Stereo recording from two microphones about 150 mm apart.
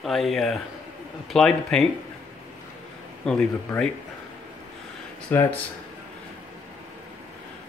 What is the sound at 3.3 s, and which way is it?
Speech, 5° left (ahead or behind).